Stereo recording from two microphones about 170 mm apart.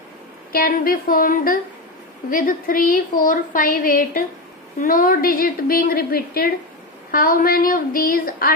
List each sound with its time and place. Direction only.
0.5 s speech: 60° left (ahead or behind)